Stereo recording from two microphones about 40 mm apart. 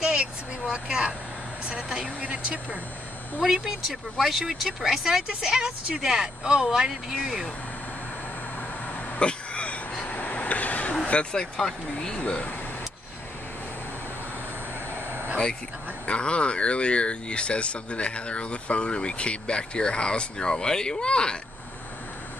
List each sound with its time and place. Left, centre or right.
0.0 s vehicle: right
1.8 s speech: centre
2.2 s speech: right
3.4 s speech: centre
9.2 s a sound: left
10.0 s vehicle: left
11.1 s speech: left
11.5 s speech: centre
12.2 s speech: left
15.0 s a sound: right
16.1 s speech: left